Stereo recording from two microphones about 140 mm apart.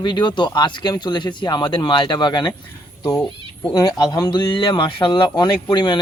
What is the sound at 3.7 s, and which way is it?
Speech, 30° left (ahead or behind).